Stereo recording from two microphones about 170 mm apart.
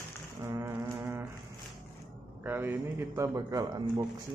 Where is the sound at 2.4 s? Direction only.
10° right (ahead or behind).